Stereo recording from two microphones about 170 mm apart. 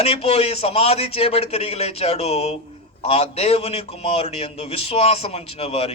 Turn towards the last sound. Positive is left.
turn(degrees=35)  # may be behind; listen again after turning